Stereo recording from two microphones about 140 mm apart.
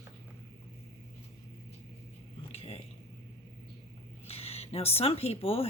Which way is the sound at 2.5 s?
45° left (ahead or behind).